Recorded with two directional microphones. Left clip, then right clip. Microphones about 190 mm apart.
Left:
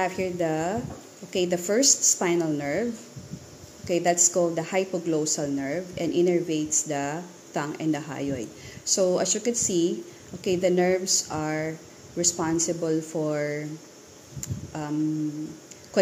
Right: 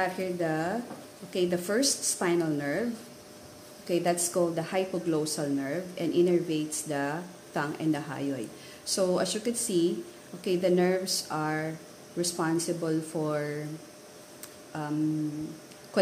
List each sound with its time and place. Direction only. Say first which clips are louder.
0.0 s a woman's voice: left 3 dB; 20° left (ahead or behind)
3.8 s a woman's voice: left 5 dB; 15° left (ahead or behind)
14.4 s a sound: left 3 dB; 15° left (ahead or behind)